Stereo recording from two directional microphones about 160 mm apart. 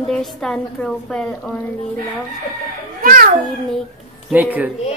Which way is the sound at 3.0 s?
60° right (ahead or behind).